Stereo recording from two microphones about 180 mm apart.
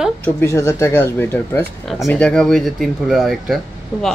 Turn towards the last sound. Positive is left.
turn(degrees=0)  # may be behind; listen again after turning